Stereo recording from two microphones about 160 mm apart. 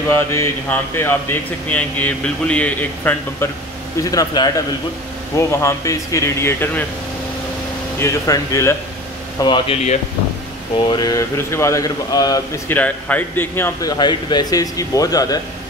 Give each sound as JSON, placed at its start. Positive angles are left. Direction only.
{"t": 0.1, "sound": "speech", "side_deg": 15}
{"t": 4.0, "sound": "speech", "side_deg": 20}
{"t": 5.5, "sound": "speech", "side_deg": 20}
{"t": 8.0, "sound": "speech", "side_deg": 20}
{"t": 10.8, "sound": "speech", "side_deg": 25}
{"t": 12.6, "sound": "speech", "side_deg": 10}